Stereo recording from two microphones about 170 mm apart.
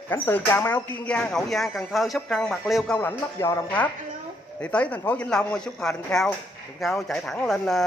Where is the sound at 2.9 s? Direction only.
15° left (ahead or behind).